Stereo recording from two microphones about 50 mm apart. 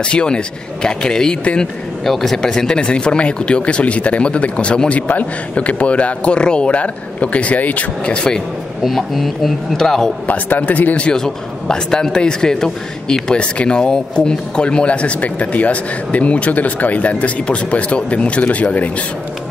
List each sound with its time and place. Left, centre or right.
0.1 s a man's voice: centre
8.1 s a man's voice: centre
8.8 s a man's voice: centre
10.2 s a man's voice: left
11.0 s a man's voice: centre